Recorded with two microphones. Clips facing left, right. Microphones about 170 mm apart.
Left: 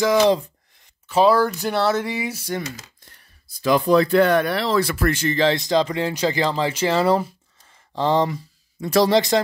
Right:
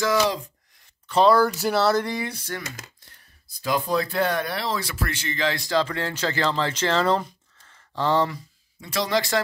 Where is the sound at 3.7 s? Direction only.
90° left; by 5.4 s 45° left (ahead or behind).